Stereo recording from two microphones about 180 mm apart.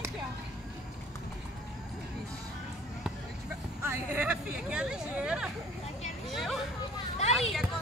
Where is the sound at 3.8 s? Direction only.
10° right (ahead or behind).